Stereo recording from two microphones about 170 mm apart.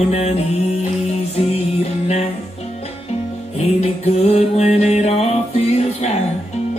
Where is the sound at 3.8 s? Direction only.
40° left (ahead or behind).